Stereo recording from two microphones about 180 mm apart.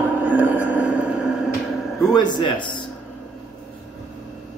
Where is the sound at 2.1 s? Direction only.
25° left (ahead or behind).